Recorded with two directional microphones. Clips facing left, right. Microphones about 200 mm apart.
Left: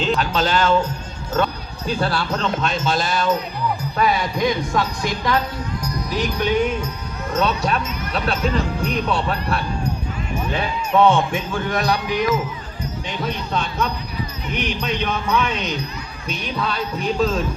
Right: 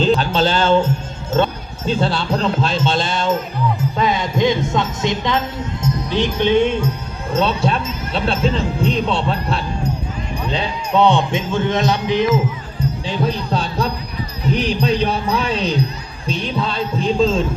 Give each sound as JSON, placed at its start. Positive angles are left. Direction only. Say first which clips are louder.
{"t": 0.0, "sound": "music", "louder": "right 5 dB", "side_deg": -30}
{"t": 1.3, "sound": "speech", "louder": "right 4 dB", "side_deg": -25}